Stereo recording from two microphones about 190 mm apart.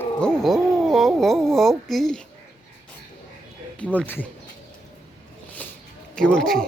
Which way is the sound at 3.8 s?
10° left (ahead or behind).